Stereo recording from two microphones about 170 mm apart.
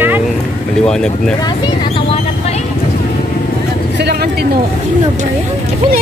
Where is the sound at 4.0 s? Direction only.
75° right (ahead or behind).